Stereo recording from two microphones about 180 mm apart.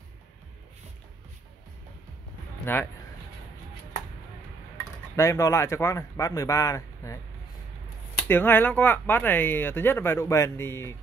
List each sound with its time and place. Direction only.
2.6 s speech: 10° left (ahead or behind)
5.1 s speech: 15° left (ahead or behind)
8.3 s speech: 10° left (ahead or behind)